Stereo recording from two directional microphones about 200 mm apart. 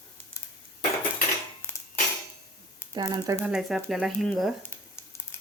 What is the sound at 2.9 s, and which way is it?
Speech, 20° right (ahead or behind).